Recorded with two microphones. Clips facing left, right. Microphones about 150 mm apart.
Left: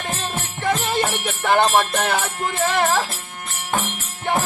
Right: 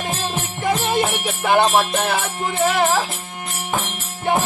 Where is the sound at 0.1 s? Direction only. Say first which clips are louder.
Right 2 dB; 15° right (ahead or behind).